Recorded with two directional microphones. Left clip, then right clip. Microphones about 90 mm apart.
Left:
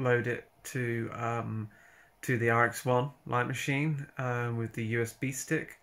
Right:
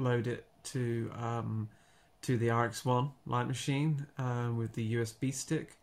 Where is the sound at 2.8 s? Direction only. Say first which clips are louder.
Left 4 dB; 20° right (ahead or behind).